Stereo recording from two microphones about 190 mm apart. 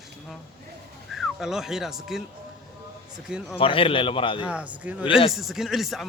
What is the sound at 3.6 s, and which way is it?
Speech, 30° left (ahead or behind).